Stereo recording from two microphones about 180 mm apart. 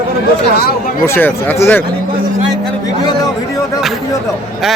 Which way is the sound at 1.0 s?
15° left (ahead or behind).